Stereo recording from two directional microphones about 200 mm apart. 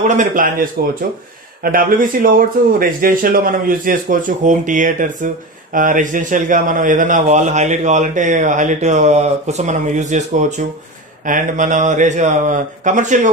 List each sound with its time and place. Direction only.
0.0 s speech: 40° right (ahead or behind)